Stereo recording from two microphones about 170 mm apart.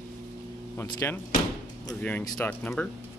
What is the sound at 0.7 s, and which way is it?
Speech, 15° left (ahead or behind).